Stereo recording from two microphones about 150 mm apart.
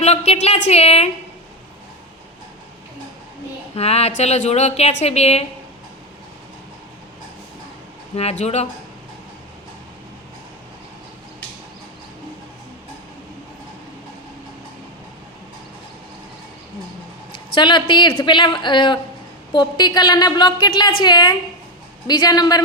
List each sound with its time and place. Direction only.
0.0 s a woman's voice: 45° left (ahead or behind)
3.8 s a woman's voice: 45° left (ahead or behind)
8.1 s a woman's voice: 45° left (ahead or behind)
17.3 s a woman's voice: 30° left (ahead or behind)